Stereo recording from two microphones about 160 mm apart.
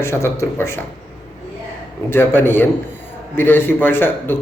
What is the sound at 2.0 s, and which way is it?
A man's voice, 15° left (ahead or behind).